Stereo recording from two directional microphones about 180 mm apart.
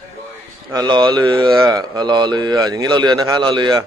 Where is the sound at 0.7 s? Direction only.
25° right (ahead or behind).